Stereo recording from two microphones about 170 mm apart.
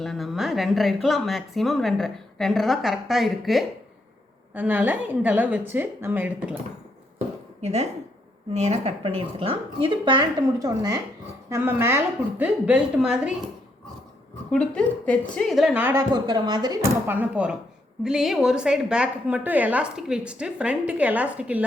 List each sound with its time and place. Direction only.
0.0 s a woman's voice: centre (ahead or behind)
7.6 s a woman's voice: 40° right (ahead or behind); by 13.3 s 5° right (ahead or behind)
14.5 s speech: 5° left (ahead or behind); by 16.0 s 10° right (ahead or behind)
16.1 s a woman's voice: 25° right (ahead or behind)
17.1 s a woman's voice: 10° right (ahead or behind)